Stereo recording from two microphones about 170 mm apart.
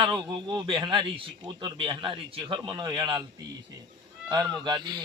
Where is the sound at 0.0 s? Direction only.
25° right (ahead or behind).